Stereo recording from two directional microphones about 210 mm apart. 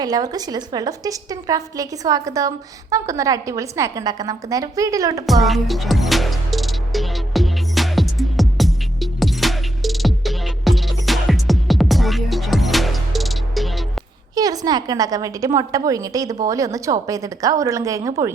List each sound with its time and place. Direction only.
0.0 s a woman's voice: 20° right (ahead or behind)
5.2 s music: centre (ahead or behind)
14.3 s a woman's voice: 15° right (ahead or behind)